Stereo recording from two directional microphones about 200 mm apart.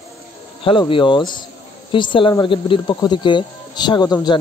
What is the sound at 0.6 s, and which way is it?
Speech, 25° left (ahead or behind).